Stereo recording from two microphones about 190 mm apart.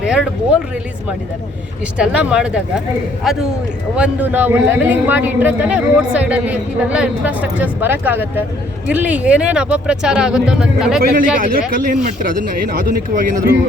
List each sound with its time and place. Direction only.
0.0 s speech: centre (ahead or behind)
2.0 s a man's voice: 5° right (ahead or behind)
11.0 s a man's voice: 50° right (ahead or behind)